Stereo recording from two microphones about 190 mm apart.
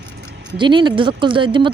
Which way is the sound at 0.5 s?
25° right (ahead or behind).